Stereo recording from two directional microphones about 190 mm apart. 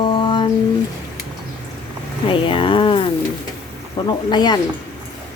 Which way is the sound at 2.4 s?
25° left (ahead or behind).